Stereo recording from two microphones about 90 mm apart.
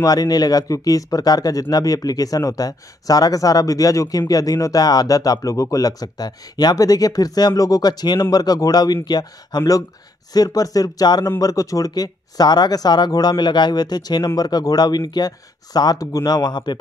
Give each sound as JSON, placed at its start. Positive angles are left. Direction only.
{"t": 0.0, "sound": "speech", "side_deg": 45}